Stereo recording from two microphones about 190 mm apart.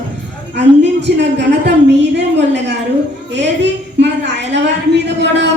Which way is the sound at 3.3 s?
65° right (ahead or behind).